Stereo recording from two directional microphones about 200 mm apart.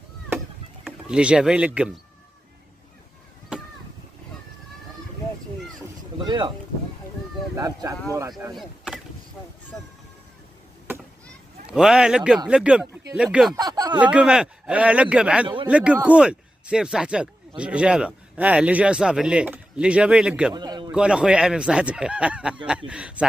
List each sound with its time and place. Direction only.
0.8 s speech: 5° right (ahead or behind)
6.2 s speech: 20° right (ahead or behind)
7.5 s speech: 15° right (ahead or behind)
8.5 s chop: centre (ahead or behind)
9.7 s a man's voice: centre (ahead or behind)
11.6 s a man's voice: 5° right (ahead or behind)
13.6 s speech: 20° right (ahead or behind)
13.9 s a man's voice: 5° right (ahead or behind)
15.4 s speech: 25° right (ahead or behind)
15.7 s a man's voice: 5° right (ahead or behind)
20.5 s a man's voice: 20° right (ahead or behind)
20.9 s a man's voice: 5° right (ahead or behind)